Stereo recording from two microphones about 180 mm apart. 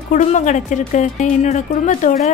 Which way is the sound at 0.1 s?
45° left (ahead or behind).